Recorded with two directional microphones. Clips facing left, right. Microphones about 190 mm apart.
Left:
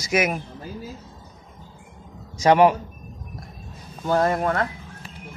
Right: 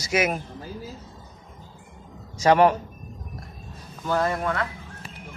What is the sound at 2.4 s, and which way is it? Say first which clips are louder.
Speech: left 2 dB; 15° left (ahead or behind).